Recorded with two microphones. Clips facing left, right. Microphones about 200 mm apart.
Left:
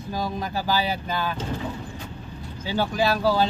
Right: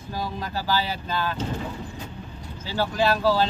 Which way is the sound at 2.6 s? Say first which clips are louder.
Even; 15° left (ahead or behind).